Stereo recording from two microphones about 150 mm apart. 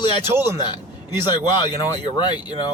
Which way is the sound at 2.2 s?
30° left (ahead or behind).